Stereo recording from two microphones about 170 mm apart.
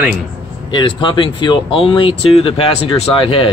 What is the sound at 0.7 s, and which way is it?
Speech, 30° left (ahead or behind).